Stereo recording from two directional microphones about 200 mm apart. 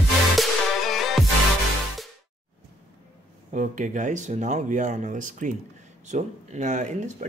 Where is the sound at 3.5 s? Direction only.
40° right (ahead or behind).